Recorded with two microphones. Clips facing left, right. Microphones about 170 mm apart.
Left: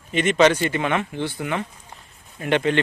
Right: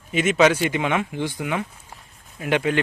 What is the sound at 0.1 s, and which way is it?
Speech, 5° right (ahead or behind).